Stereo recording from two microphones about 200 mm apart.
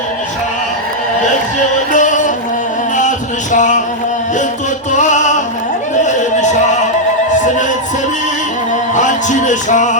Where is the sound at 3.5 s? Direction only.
40° left (ahead or behind).